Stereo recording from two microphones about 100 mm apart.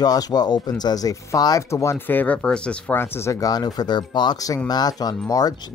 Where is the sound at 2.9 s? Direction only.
25° left (ahead or behind).